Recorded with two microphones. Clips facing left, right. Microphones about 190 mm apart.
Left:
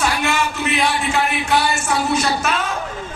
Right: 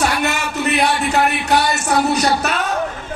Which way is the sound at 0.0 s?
40° right (ahead or behind).